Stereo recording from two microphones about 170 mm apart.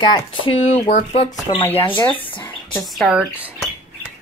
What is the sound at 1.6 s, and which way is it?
Speech, 10° left (ahead or behind).